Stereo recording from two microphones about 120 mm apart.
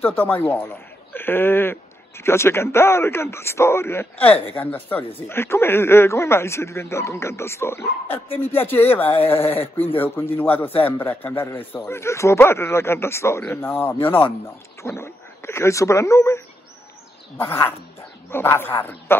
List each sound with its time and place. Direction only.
0.0 s a man's voice: 15° left (ahead or behind)